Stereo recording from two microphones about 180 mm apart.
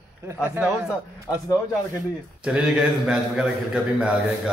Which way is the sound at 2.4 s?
5° right (ahead or behind).